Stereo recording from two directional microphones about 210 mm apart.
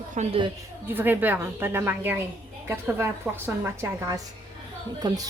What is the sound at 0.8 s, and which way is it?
A woman's voice, 10° right (ahead or behind).